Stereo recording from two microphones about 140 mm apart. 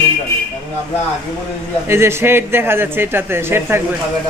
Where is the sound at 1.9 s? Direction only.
20° right (ahead or behind).